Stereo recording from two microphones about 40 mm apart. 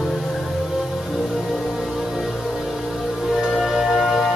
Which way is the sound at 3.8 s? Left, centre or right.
Centre.